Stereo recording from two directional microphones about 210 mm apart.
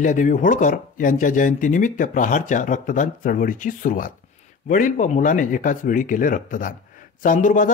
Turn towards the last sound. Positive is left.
turn(degrees=40)  # may be behind; listen again after turning